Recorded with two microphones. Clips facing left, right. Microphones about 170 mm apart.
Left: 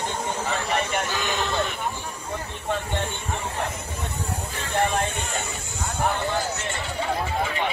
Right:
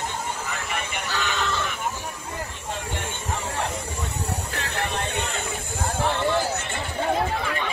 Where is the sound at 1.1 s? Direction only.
15° left (ahead or behind).